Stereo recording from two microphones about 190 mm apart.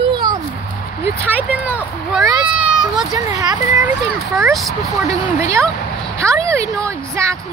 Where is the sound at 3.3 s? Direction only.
15° right (ahead or behind).